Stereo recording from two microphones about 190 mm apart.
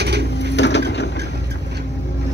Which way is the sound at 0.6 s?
65° left (ahead or behind).